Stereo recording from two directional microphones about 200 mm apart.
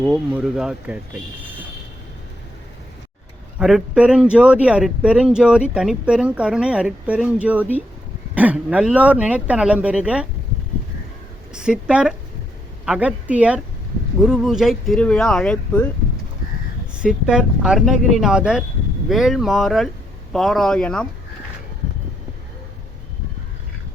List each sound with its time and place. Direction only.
0.0 s speech: 5° right (ahead or behind)
3.6 s speech: centre (ahead or behind)
11.5 s speech: 5° right (ahead or behind)
17.0 s speech: 5° right (ahead or behind)